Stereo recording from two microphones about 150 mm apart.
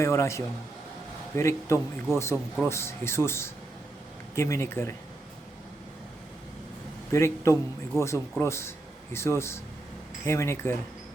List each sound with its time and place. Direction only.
0.0 s speech: 20° left (ahead or behind)
7.1 s speech: 20° left (ahead or behind)